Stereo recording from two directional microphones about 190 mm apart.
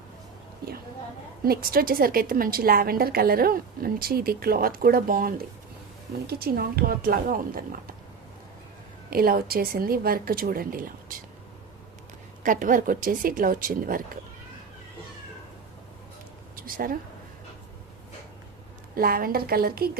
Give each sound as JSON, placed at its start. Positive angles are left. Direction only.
{"t": 1.5, "sound": "a woman's voice", "side_deg": -50}
{"t": 9.0, "sound": "a woman's voice", "side_deg": -50}
{"t": 12.4, "sound": "a woman's voice", "side_deg": -45}
{"t": 16.6, "sound": "speech", "side_deg": -50}
{"t": 18.9, "sound": "a woman's voice", "side_deg": -50}